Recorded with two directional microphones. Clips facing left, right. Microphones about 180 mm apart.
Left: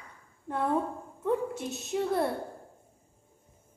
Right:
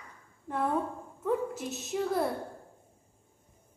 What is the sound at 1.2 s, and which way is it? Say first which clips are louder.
A woman's voice: left 1 dB; centre (ahead or behind).